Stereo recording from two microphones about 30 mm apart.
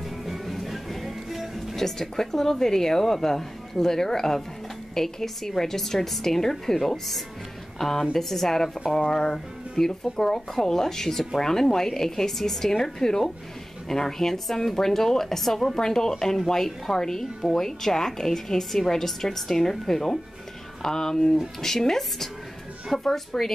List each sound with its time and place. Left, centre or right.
0.0 s music: centre
1.8 s speech: centre